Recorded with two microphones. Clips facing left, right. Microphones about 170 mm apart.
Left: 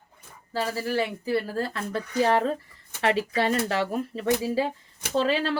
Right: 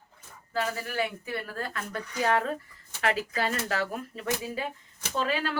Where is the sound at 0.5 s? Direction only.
35° left (ahead or behind).